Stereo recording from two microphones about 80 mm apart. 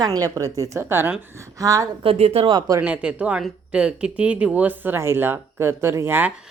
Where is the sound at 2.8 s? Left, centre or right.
Centre.